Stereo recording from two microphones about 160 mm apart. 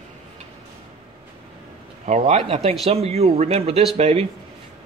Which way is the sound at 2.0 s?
45° right (ahead or behind).